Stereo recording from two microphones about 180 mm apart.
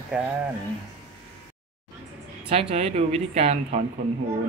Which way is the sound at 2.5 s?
35° right (ahead or behind).